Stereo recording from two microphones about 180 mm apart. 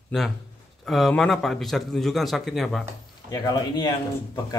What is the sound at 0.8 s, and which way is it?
A man's voice, centre (ahead or behind).